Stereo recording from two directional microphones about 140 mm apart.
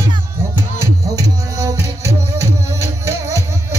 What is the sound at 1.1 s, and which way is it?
Music, 25° right (ahead or behind).